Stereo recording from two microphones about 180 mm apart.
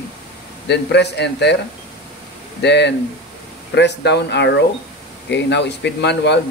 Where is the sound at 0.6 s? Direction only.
70° left (ahead or behind).